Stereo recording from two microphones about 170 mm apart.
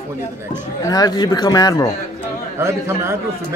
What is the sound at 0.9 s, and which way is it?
Speech, 20° left (ahead or behind).